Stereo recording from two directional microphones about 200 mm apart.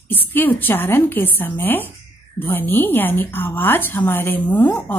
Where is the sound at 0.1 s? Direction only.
10° left (ahead or behind).